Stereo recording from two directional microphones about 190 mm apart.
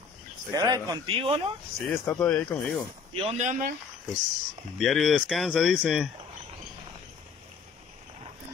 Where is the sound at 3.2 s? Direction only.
35° right (ahead or behind).